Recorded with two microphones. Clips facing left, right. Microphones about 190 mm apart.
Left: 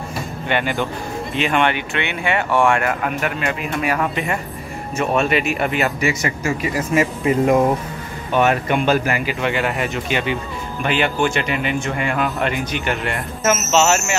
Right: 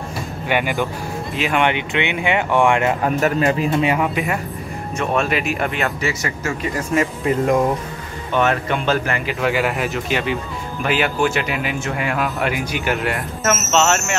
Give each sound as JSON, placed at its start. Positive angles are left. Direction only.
{"t": 0.5, "sound": "speech", "side_deg": -5}
{"t": 1.6, "sound": "speech", "side_deg": -20}
{"t": 3.2, "sound": "speech", "side_deg": -35}
{"t": 4.1, "sound": "speech", "side_deg": -5}
{"t": 5.9, "sound": "a man's voice", "side_deg": 15}